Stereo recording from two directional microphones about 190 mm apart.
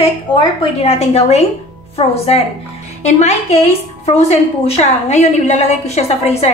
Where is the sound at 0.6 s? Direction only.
35° left (ahead or behind).